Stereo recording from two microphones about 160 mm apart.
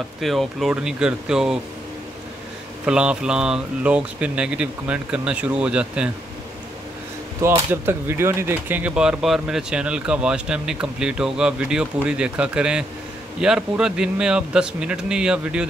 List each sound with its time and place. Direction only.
0.2 s speech: centre (ahead or behind)
2.8 s speech: 5° right (ahead or behind)
7.4 s speech: 15° right (ahead or behind)